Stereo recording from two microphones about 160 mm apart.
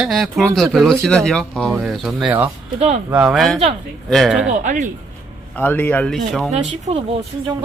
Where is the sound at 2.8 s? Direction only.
45° right (ahead or behind).